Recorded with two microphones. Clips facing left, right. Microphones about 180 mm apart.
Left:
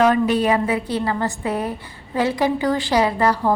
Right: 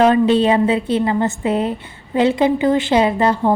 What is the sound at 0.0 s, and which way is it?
A woman's voice, 25° right (ahead or behind).